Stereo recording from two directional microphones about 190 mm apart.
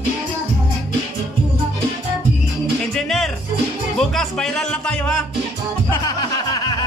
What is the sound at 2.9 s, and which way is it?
Music, centre (ahead or behind).